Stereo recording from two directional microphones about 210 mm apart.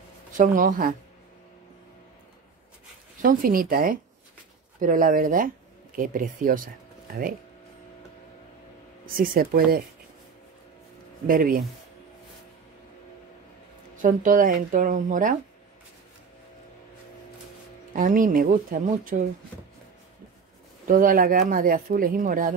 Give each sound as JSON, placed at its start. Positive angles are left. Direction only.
{"t": 0.4, "sound": "speech", "side_deg": -40}
{"t": 3.2, "sound": "speech", "side_deg": -40}
{"t": 9.0, "sound": "speech", "side_deg": -40}
{"t": 11.2, "sound": "speech", "side_deg": -40}
{"t": 14.0, "sound": "speech", "side_deg": -40}
{"t": 17.9, "sound": "speech", "side_deg": -40}
{"t": 20.8, "sound": "speech", "side_deg": -40}